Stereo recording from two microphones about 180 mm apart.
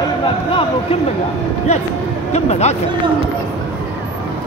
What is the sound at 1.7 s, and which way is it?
A man's voice, 40° left (ahead or behind).